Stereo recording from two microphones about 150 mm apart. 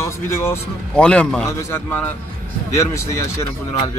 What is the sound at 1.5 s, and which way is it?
A man's voice, 15° left (ahead or behind).